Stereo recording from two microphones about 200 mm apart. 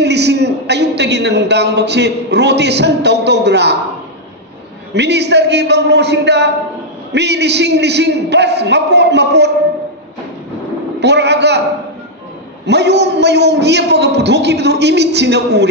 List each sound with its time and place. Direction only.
0.0 s a man's voice: 60° right (ahead or behind)
4.9 s a man's voice: 60° right (ahead or behind)
11.0 s a man's voice: 60° right (ahead or behind)
12.6 s a man's voice: 60° right (ahead or behind)